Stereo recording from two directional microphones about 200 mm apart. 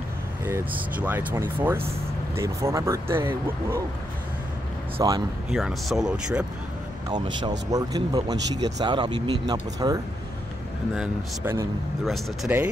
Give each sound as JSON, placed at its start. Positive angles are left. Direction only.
{"t": 1.0, "sound": "speech", "side_deg": -10}
{"t": 4.9, "sound": "speech", "side_deg": -20}
{"t": 5.5, "sound": "speech", "side_deg": 0}
{"t": 7.1, "sound": "speech", "side_deg": -20}
{"t": 12.0, "sound": "speech", "side_deg": 0}